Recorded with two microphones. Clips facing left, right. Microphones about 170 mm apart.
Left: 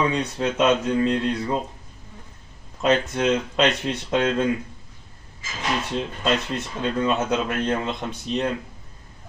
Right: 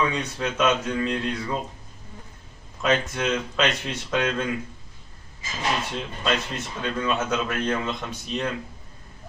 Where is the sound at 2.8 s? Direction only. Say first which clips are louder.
Left 3 dB; 30° left (ahead or behind).